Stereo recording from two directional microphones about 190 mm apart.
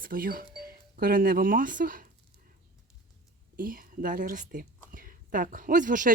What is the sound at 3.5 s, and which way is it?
A woman's voice, 50° right (ahead or behind).